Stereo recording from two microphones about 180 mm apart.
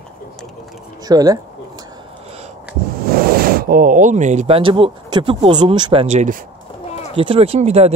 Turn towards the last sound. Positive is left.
turn(degrees=-35)  # may be behind; listen again after turning